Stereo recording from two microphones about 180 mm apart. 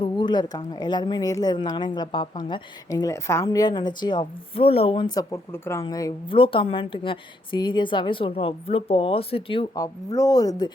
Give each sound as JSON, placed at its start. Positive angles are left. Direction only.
{"t": 0.0, "sound": "a woman's voice", "side_deg": 25}